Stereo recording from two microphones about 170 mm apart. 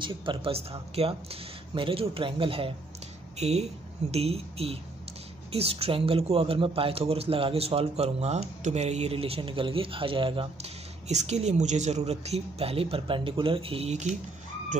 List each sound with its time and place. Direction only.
0.0 s speech: 30° right (ahead or behind)